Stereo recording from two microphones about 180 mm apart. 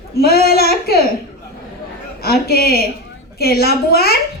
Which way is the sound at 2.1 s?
60° left (ahead or behind).